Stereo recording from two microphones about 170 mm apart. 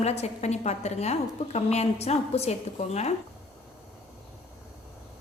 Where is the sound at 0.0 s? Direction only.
40° left (ahead or behind).